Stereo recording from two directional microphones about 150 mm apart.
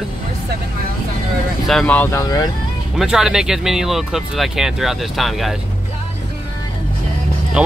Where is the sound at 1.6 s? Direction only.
5° left (ahead or behind); by 2.4 s 25° left (ahead or behind).